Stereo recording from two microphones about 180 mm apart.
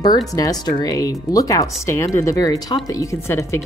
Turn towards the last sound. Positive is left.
turn(degrees=15)  # may be behind; listen again after turning